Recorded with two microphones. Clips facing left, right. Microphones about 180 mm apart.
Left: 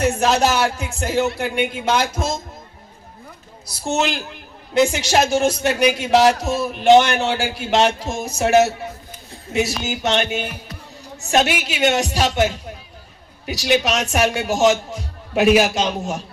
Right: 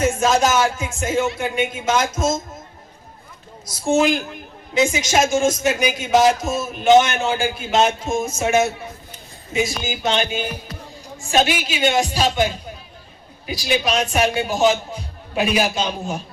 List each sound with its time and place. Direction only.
0.0 s speech: 70° left (ahead or behind)
4.7 s speech: 65° left (ahead or behind)